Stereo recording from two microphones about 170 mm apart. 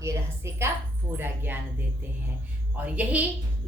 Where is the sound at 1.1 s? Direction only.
10° right (ahead or behind).